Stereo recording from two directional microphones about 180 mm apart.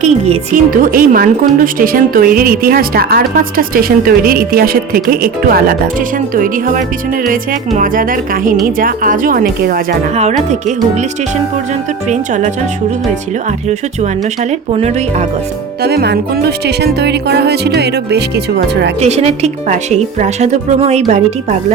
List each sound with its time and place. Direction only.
0.0 s speech: 45° right (ahead or behind)
10.2 s a woman's voice: 40° right (ahead or behind)
12.0 s a woman's voice: 40° right (ahead or behind)
14.7 s a woman's voice: 40° right (ahead or behind)
15.8 s music: 65° right (ahead or behind)
18.9 s a woman's voice: 35° right (ahead or behind)